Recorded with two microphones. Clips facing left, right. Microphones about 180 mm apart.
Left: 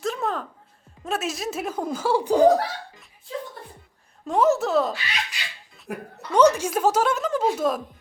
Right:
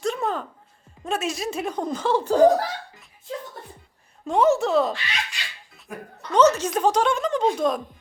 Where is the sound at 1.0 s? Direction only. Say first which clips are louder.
Right 1 dB; centre (ahead or behind).